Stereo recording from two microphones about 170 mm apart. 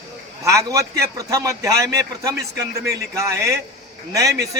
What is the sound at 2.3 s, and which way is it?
Speech, 75° right (ahead or behind).